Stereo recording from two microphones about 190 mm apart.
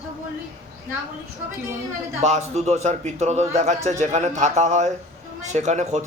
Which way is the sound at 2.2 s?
35° right (ahead or behind).